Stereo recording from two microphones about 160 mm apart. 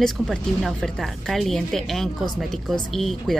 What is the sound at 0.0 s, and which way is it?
Speech, centre (ahead or behind).